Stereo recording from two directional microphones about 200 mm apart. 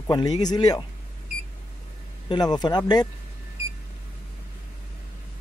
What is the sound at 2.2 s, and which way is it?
Speech, 20° left (ahead or behind).